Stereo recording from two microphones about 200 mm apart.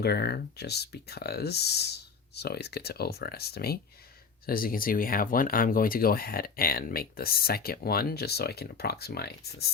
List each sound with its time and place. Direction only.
0.0 s speech: 55° left (ahead or behind)